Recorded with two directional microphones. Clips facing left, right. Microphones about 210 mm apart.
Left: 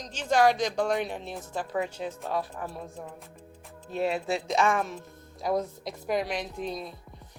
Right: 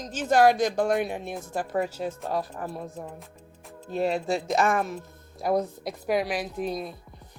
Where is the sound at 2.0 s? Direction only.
45° right (ahead or behind).